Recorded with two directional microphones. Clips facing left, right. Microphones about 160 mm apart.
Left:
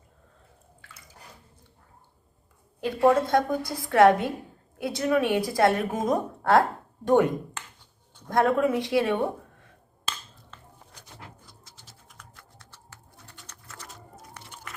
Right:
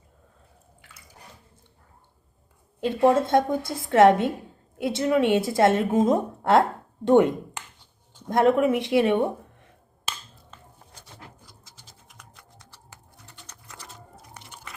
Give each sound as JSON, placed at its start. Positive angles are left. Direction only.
{"t": 2.8, "sound": "a woman's voice", "side_deg": -25}
{"t": 12.0, "sound": "typing", "side_deg": -20}
{"t": 13.5, "sound": "pigeon", "side_deg": -10}